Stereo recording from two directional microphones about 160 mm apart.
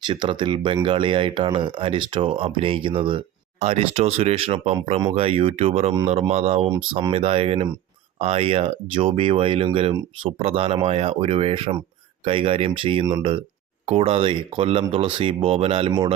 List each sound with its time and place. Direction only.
0.0 s speech: 30° right (ahead or behind)